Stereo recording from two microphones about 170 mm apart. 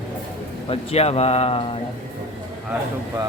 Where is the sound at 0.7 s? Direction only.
35° left (ahead or behind).